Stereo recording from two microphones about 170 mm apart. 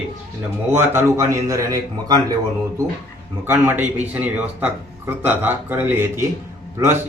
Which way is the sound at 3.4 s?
10° right (ahead or behind).